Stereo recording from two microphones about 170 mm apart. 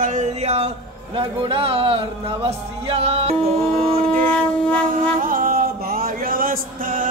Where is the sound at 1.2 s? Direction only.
35° right (ahead or behind).